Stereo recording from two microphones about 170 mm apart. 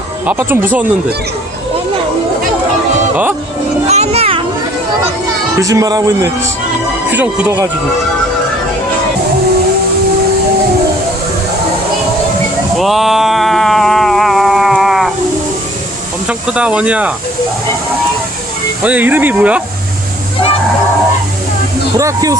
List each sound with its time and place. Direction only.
0.3 s speech: 10° right (ahead or behind)
3.8 s a child's voice: 40° right (ahead or behind)
5.5 s speech: 20° right (ahead or behind)
12.7 s music: centre (ahead or behind)
16.5 s speech: 5° right (ahead or behind)
18.8 s speech: 10° right (ahead or behind)
21.9 s speech: 20° right (ahead or behind)